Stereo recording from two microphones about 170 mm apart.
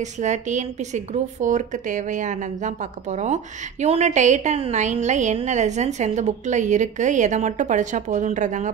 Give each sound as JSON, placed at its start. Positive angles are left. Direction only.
{"t": 0.0, "sound": "a woman's voice", "side_deg": -45}